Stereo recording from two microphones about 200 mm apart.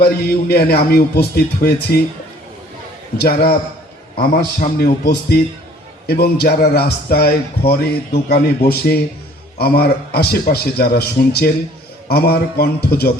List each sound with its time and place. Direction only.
0.0 s speech: 50° left (ahead or behind)
3.2 s speech: 50° left (ahead or behind)